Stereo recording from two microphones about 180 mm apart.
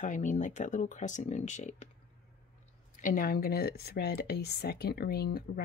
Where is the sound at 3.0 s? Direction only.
50° left (ahead or behind).